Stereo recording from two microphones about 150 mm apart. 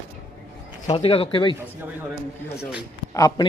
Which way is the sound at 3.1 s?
20° left (ahead or behind).